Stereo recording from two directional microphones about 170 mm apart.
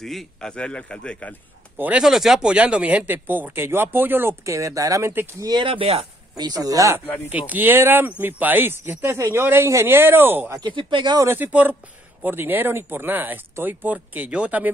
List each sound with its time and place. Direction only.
0.0 s a man's voice: centre (ahead or behind)
1.8 s speech: 5° right (ahead or behind)
5.5 s speech: 30° right (ahead or behind)
6.3 s speech: 25° right (ahead or behind)
10.6 s speech: 30° right (ahead or behind)
11.2 s speech: 10° right (ahead or behind)